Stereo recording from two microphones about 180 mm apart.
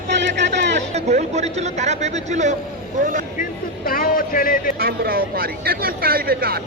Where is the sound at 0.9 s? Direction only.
40° right (ahead or behind).